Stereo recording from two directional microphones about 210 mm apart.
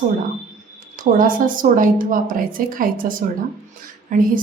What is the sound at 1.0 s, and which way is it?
A woman's voice, 40° right (ahead or behind).